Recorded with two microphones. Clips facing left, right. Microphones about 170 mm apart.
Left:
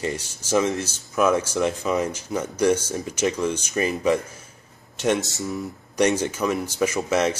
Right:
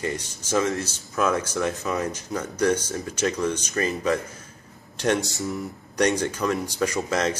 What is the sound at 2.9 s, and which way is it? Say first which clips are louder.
Speech: left 2 dB; 20° left (ahead or behind).